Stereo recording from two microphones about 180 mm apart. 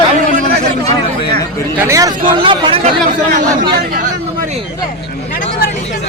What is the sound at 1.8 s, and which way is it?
Speech, 15° right (ahead or behind).